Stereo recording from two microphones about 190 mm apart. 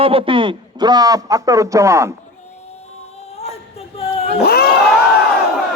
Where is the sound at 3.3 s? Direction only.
35° left (ahead or behind).